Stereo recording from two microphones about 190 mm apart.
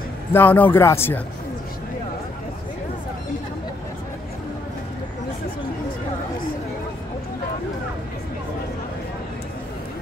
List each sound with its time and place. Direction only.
0.3 s speech: 10° left (ahead or behind)